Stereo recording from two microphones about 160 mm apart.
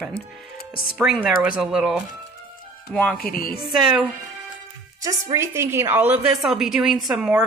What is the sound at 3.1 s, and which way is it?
Speech, 65° left (ahead or behind).